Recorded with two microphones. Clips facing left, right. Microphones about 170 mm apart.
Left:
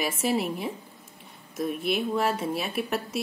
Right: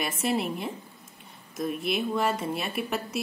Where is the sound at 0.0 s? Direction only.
5° left (ahead or behind).